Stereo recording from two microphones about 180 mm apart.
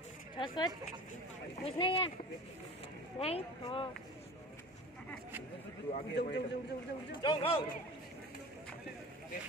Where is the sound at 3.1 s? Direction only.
35° left (ahead or behind).